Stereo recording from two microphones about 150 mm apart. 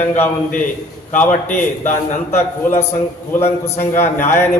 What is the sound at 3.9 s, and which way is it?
Speech, 15° left (ahead or behind).